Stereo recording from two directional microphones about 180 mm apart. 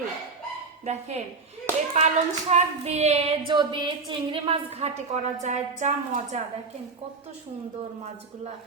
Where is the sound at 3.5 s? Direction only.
25° right (ahead or behind).